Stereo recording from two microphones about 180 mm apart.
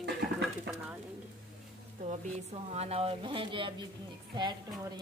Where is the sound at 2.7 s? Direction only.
35° right (ahead or behind).